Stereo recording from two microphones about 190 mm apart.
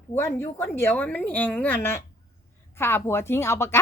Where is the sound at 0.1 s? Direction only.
15° left (ahead or behind).